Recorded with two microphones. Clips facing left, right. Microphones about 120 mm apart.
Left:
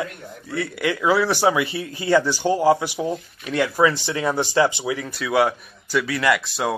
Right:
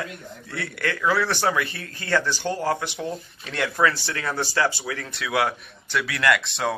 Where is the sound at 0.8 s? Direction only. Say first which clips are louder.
Left 4 dB; 10° left (ahead or behind).